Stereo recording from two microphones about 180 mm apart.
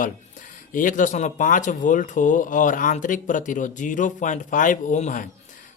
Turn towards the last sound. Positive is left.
turn(degrees=45)  # may be behind; listen again after turning